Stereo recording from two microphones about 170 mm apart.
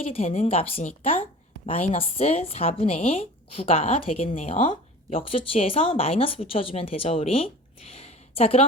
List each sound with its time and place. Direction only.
0.0 s speech: 35° left (ahead or behind)